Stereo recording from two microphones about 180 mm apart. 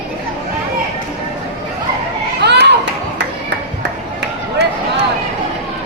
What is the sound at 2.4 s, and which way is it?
Children playing, 70° right (ahead or behind).